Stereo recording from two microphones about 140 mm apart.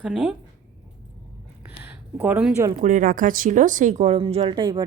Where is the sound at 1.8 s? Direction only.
10° right (ahead or behind).